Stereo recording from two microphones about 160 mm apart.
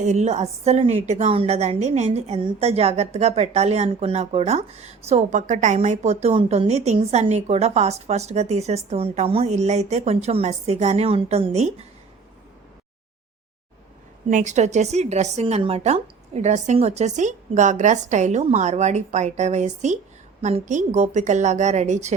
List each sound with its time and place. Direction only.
0.0 s a woman's voice: 45° right (ahead or behind)
14.3 s a woman's voice: 50° right (ahead or behind)